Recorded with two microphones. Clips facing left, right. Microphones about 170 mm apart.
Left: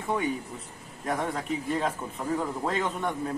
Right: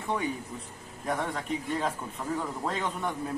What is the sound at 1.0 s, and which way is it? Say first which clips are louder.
A man's voice: left 2 dB; centre (ahead or behind).